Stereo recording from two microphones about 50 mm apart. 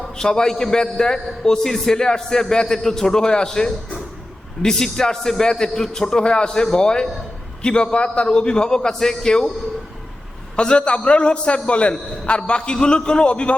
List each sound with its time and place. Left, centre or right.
0.2 s a man's voice: centre
10.6 s a man's voice: centre